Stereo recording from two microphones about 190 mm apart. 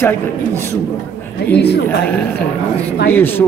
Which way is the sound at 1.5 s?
60° left (ahead or behind).